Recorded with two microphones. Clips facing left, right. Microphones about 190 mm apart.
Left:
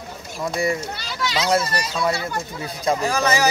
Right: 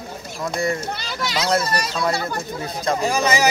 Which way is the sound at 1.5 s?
5° left (ahead or behind).